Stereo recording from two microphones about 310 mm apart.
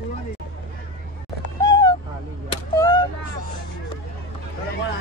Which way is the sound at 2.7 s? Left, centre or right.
Centre.